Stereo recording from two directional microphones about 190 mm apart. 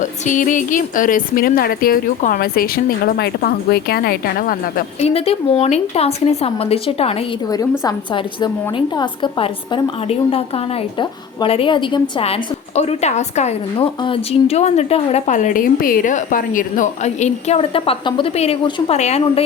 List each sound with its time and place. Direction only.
0.0 s a woman's voice: 40° left (ahead or behind)
4.9 s speech: 30° left (ahead or behind)
7.5 s a woman's voice: 20° left (ahead or behind)